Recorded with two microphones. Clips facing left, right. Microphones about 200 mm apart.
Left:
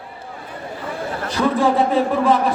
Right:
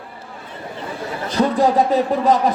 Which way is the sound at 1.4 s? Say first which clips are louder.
Right 1 dB; 25° right (ahead or behind).